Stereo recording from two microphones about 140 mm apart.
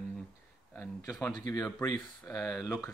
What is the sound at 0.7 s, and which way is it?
Speech, 25° left (ahead or behind).